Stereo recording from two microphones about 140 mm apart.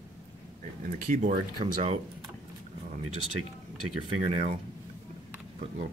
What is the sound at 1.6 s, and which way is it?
Speech, 45° right (ahead or behind).